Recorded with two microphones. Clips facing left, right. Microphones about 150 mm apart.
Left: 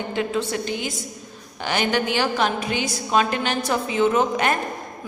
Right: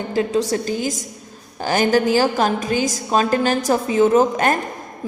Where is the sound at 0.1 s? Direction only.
40° right (ahead or behind).